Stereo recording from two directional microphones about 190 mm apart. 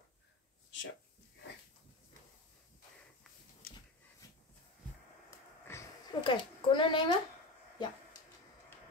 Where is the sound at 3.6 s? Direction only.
50° left (ahead or behind).